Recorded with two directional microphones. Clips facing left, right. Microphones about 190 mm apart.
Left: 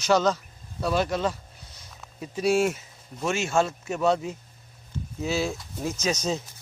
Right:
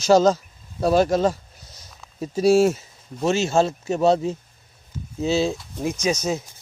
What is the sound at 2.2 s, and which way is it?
Speech, 40° right (ahead or behind).